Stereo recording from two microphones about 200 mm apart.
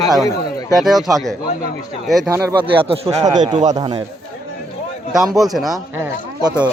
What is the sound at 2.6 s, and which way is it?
Speech, 25° right (ahead or behind).